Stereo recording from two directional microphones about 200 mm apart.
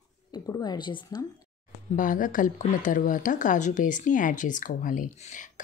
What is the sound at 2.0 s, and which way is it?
Speech, 40° left (ahead or behind).